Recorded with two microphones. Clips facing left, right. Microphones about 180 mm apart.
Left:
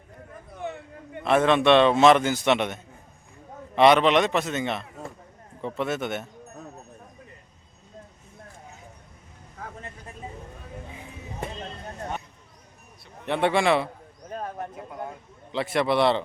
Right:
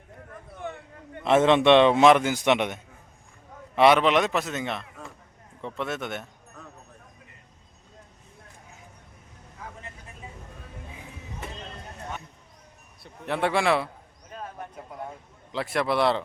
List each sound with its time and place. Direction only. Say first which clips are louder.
1.2 s a man's voice: right 1 dB; 20° right (ahead or behind); by 6.2 s centre (ahead or behind)
9.6 s vehicle: left 3 dB; 45° left (ahead or behind)
13.2 s a man's voice: left 2 dB; centre (ahead or behind)
14.3 s bird: left 5 dB; 40° left (ahead or behind)
15.5 s a man's voice: left 2 dB; centre (ahead or behind)